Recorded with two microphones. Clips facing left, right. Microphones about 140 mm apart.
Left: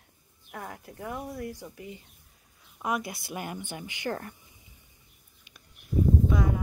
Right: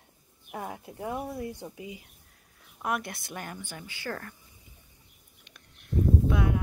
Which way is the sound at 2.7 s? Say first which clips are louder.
Left 1 dB; centre (ahead or behind).